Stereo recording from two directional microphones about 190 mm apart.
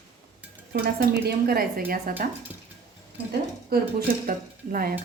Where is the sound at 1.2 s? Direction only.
50° right (ahead or behind).